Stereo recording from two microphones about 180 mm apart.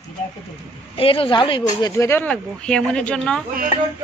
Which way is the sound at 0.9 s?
30° left (ahead or behind).